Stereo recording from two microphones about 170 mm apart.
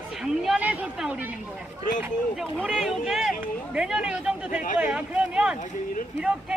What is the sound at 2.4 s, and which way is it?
Speech, 5° right (ahead or behind).